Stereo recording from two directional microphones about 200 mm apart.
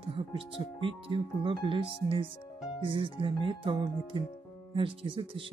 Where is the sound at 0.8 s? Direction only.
25° right (ahead or behind).